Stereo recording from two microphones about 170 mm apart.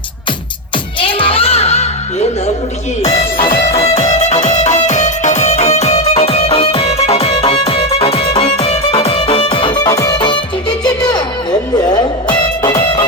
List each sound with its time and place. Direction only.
0.9 s music: 30° left (ahead or behind)
3.0 s music: 25° left (ahead or behind)
3.8 s music: 35° left (ahead or behind)